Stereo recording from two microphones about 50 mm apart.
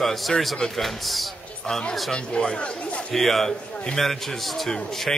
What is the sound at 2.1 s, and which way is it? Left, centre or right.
Speech, centre.